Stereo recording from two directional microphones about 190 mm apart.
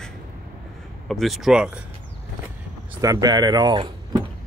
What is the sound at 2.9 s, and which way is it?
Speech, 20° right (ahead or behind).